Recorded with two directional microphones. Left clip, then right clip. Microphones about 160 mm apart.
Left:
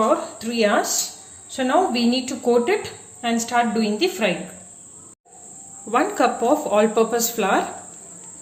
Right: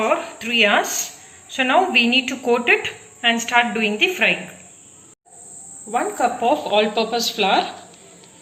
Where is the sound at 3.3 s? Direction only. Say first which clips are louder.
Even; 60° left (ahead or behind).